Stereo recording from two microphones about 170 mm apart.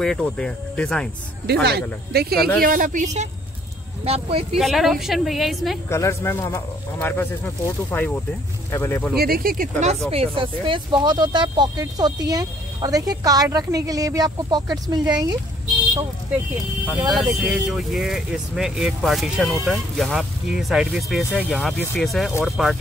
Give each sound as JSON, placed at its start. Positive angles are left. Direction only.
{"t": 0.0, "sound": "speech", "side_deg": 5}
{"t": 1.5, "sound": "speech", "side_deg": -75}
{"t": 4.6, "sound": "speech", "side_deg": 0}
{"t": 5.9, "sound": "speech", "side_deg": 15}
{"t": 9.1, "sound": "speech", "side_deg": -65}
{"t": 17.1, "sound": "speech", "side_deg": 0}
{"t": 21.2, "sound": "speech", "side_deg": 10}